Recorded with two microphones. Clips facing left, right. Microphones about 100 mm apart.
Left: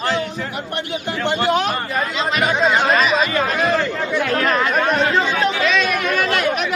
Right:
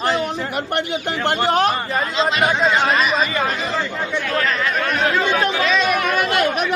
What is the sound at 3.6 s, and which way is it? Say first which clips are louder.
Speech: left 4 dB; 60° left (ahead or behind).